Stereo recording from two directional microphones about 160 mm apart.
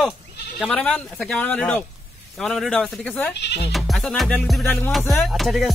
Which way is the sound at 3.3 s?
90° left.